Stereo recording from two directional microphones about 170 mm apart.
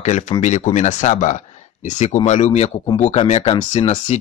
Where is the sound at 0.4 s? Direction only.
45° left (ahead or behind).